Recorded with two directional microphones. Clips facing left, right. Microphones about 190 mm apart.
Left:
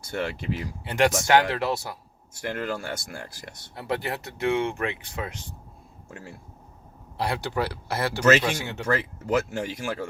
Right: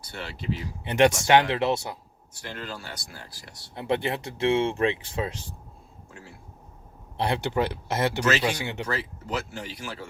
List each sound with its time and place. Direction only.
0.0 s speech: 50° left (ahead or behind)
0.9 s speech: 20° right (ahead or behind)
2.3 s speech: 50° left (ahead or behind)
3.8 s speech: 25° right (ahead or behind)
7.2 s speech: 20° right (ahead or behind)
8.9 s speech: 50° left (ahead or behind)